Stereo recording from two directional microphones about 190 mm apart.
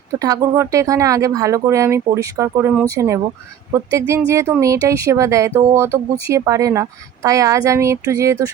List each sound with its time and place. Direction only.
0.2 s speech: 15° right (ahead or behind)